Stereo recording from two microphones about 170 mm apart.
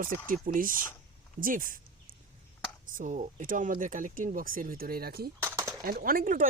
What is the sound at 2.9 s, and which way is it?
Speech, 45° right (ahead or behind).